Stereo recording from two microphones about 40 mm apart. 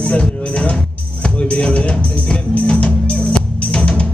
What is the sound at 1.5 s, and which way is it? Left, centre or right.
Music, left.